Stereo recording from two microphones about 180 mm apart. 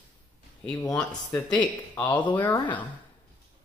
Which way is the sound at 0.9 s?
5° left (ahead or behind).